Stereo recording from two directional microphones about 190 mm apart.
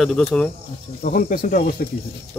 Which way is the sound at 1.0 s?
45° left (ahead or behind).